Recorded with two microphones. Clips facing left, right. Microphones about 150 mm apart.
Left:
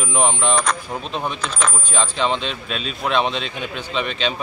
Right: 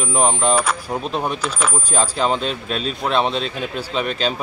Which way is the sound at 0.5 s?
5° right (ahead or behind).